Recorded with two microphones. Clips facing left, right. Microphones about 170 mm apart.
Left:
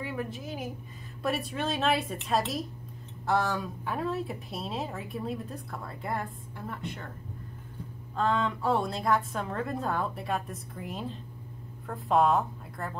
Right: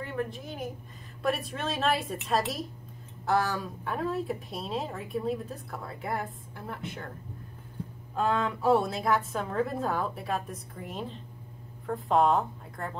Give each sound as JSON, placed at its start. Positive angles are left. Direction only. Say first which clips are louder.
{"t": 0.0, "sound": "a woman's voice", "louder": "right 1 dB", "side_deg": 5}
{"t": 8.2, "sound": "speech", "louder": "even", "side_deg": -10}